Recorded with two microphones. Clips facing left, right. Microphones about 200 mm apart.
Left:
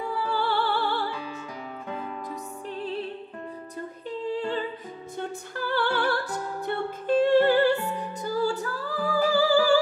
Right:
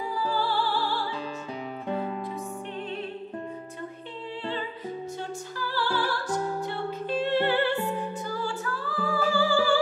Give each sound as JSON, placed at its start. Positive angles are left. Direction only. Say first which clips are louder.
{"t": 0.3, "sound": "music", "louder": "left 2 dB", "side_deg": 65}
{"t": 4.3, "sound": "music", "louder": "left 5 dB", "side_deg": 45}
{"t": 5.6, "sound": "music", "louder": "left 3 dB", "side_deg": 60}